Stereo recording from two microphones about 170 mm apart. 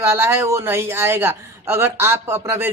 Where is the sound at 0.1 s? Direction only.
15° right (ahead or behind).